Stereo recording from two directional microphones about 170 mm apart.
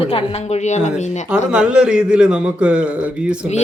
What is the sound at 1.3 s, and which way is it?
A man's voice, 5° right (ahead or behind).